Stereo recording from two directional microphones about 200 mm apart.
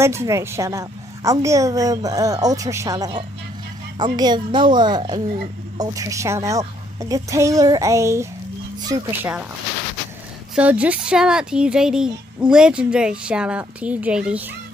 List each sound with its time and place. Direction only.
0.0 s a woman's voice: 15° right (ahead or behind)
10.5 s speech: 5° right (ahead or behind)